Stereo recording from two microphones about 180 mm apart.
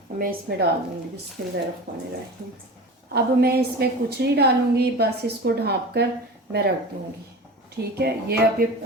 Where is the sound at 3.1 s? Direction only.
60° right (ahead or behind).